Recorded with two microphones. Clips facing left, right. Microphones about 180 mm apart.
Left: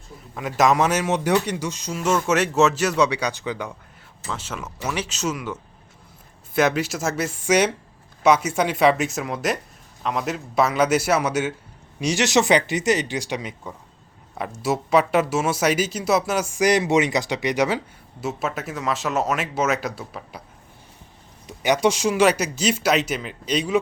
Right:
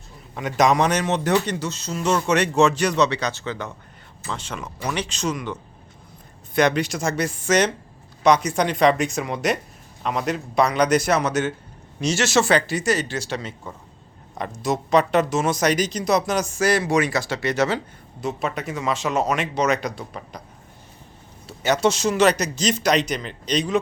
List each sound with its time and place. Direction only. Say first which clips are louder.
0.3 s a man's voice: even; centre (ahead or behind)
21.4 s speech: even; 15° left (ahead or behind)